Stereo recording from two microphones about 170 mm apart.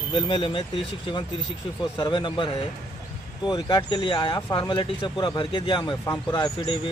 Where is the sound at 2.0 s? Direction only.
25° left (ahead or behind).